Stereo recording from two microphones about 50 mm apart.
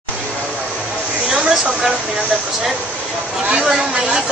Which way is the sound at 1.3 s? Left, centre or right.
Centre.